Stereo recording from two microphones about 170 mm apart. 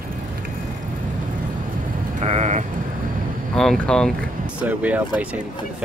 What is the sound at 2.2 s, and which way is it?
Sheep, 40° right (ahead or behind).